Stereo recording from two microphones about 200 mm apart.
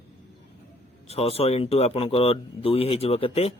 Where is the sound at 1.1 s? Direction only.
30° left (ahead or behind).